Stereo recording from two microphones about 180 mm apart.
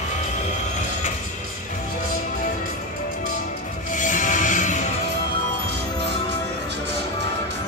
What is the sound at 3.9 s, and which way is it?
Music, 45° left (ahead or behind).